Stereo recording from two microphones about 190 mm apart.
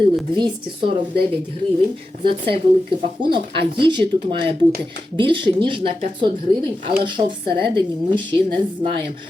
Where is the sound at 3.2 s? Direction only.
25° right (ahead or behind).